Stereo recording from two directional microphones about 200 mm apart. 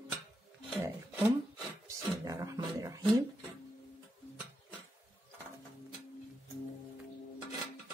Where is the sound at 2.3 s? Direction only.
15° right (ahead or behind).